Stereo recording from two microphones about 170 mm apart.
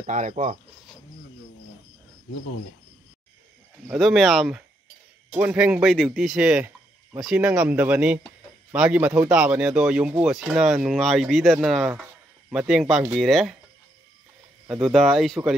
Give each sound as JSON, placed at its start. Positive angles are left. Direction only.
{"t": 0.0, "sound": "speech", "side_deg": -45}
{"t": 4.0, "sound": "speech", "side_deg": 0}
{"t": 14.7, "sound": "speech", "side_deg": 0}